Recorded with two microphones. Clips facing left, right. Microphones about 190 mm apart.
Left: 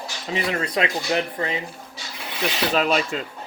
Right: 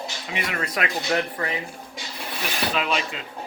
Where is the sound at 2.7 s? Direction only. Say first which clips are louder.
Left 5 dB; 40° left (ahead or behind).